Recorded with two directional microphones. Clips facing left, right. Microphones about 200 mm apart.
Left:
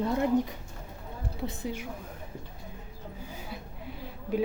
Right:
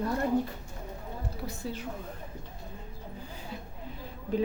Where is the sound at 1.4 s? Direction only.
15° left (ahead or behind).